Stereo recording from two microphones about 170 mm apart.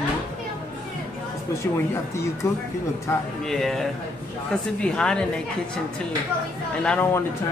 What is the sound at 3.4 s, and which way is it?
A woman's voice, centre (ahead or behind).